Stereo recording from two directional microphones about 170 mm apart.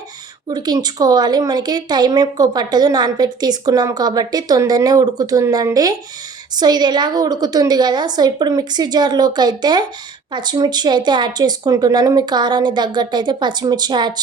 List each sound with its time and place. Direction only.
0.5 s a woman's voice: 25° right (ahead or behind)